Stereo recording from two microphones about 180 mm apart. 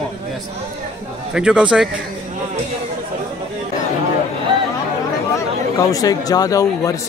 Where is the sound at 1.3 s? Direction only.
5° right (ahead or behind).